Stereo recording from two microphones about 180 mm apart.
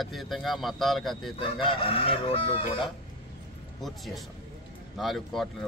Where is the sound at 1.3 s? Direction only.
30° left (ahead or behind).